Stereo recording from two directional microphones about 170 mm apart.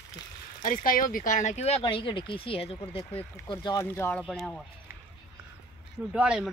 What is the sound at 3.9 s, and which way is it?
Speech, 15° left (ahead or behind).